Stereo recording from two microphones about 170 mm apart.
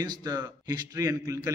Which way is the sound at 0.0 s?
25° right (ahead or behind).